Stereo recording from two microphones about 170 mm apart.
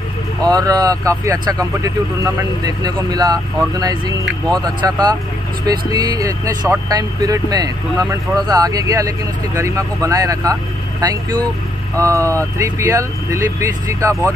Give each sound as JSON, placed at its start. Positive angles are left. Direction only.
{"t": 0.5, "sound": "speech", "side_deg": -20}